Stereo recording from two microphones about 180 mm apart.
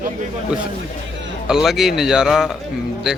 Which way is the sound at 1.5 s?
Centre (ahead or behind).